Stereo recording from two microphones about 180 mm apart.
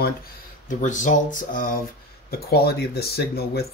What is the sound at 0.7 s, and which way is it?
Speech, 45° left (ahead or behind).